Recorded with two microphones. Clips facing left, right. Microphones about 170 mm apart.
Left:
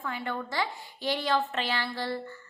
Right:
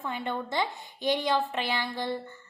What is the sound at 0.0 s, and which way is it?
A woman's voice, 20° right (ahead or behind).